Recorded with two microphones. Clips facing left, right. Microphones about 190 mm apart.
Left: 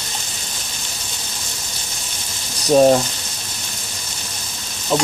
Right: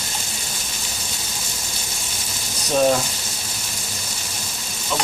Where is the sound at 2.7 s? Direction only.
35° left (ahead or behind).